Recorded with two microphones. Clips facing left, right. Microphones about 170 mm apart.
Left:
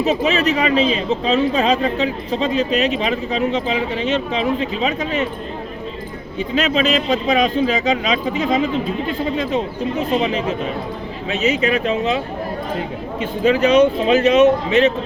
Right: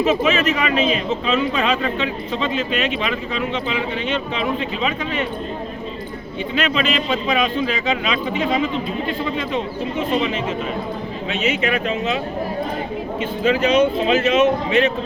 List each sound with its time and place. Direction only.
0.0 s a man's voice: 35° left (ahead or behind)
6.5 s a man's voice: 40° left (ahead or behind)
13.4 s a man's voice: 40° left (ahead or behind)